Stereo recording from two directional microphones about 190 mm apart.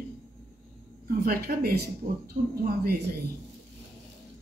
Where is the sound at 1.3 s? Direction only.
55° right (ahead or behind).